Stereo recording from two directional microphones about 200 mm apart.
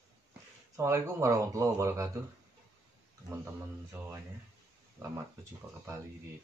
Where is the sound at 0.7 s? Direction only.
15° right (ahead or behind).